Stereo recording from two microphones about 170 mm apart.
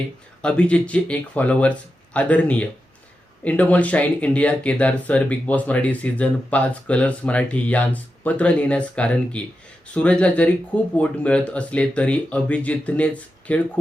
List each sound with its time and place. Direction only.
0.4 s speech: 5° left (ahead or behind)